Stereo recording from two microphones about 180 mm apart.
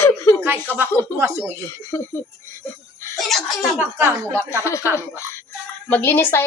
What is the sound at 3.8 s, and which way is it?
Speech, 15° right (ahead or behind).